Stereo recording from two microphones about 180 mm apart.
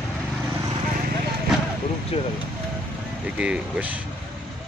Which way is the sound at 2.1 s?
30° left (ahead or behind).